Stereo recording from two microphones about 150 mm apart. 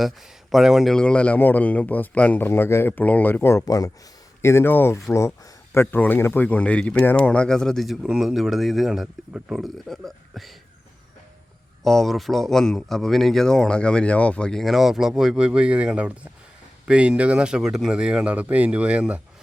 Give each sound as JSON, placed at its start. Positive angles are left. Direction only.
{"t": 0.5, "sound": "a man's voice", "side_deg": 0}
{"t": 11.8, "sound": "speech", "side_deg": 0}